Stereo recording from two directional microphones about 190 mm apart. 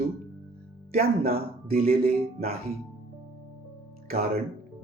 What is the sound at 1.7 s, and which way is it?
Speech, 50° right (ahead or behind).